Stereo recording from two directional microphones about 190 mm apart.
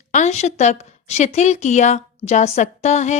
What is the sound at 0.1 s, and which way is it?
A woman's voice, 35° left (ahead or behind).